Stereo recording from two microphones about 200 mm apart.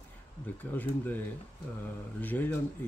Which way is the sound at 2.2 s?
10° left (ahead or behind).